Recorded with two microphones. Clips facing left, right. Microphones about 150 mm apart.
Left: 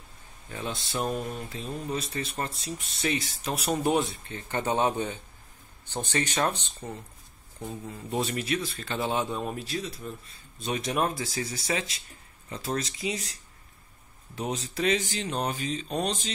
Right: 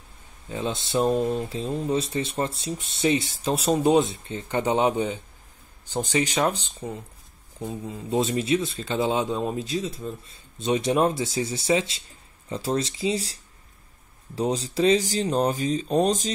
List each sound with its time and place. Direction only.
0.5 s speech: 20° right (ahead or behind); by 16.3 s 40° right (ahead or behind)